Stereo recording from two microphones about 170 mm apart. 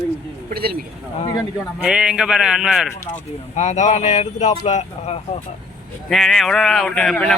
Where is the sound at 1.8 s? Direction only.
5° right (ahead or behind).